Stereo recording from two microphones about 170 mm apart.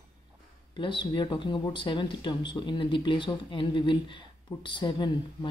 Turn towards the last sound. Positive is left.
turn(degrees=25)  # may be behind; listen again after turning